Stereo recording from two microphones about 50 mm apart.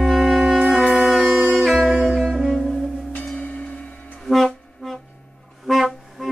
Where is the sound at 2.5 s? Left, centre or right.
Centre.